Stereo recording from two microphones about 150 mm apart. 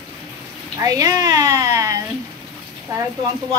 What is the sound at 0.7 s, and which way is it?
A woman's voice, 25° right (ahead or behind).